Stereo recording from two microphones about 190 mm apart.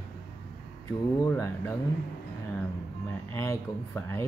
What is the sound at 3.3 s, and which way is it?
Speech, 15° left (ahead or behind).